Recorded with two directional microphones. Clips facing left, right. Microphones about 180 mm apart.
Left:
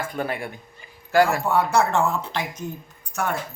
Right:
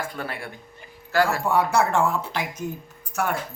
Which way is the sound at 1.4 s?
10° right (ahead or behind).